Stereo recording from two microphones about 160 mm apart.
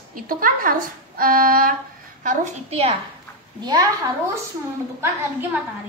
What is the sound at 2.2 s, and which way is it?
Speech, 45° right (ahead or behind).